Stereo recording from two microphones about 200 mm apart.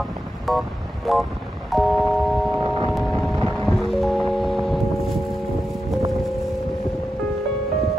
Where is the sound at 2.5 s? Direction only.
25° right (ahead or behind).